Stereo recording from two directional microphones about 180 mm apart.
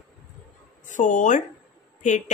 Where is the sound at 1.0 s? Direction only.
45° left (ahead or behind).